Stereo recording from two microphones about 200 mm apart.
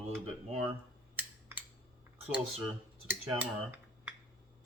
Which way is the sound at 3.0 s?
10° right (ahead or behind).